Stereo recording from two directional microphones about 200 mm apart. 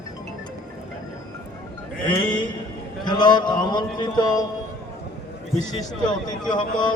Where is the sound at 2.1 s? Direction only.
25° left (ahead or behind).